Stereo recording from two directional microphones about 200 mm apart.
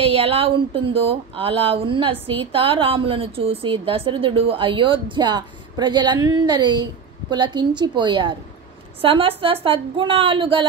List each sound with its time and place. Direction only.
0.0 s speech: 30° right (ahead or behind)